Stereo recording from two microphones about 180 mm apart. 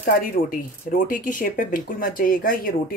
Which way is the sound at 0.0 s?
55° left (ahead or behind).